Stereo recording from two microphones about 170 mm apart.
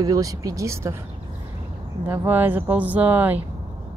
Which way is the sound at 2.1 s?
10° right (ahead or behind).